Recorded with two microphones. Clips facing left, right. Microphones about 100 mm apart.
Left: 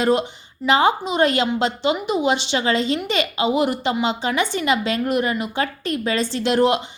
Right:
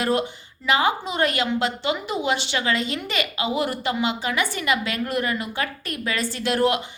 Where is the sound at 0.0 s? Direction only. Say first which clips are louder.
Left 4 dB; 25° left (ahead or behind).